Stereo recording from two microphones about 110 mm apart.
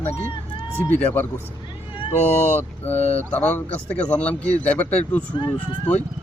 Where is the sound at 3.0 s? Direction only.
80° left.